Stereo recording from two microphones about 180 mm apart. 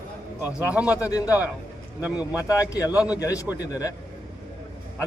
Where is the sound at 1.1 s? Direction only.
20° left (ahead or behind).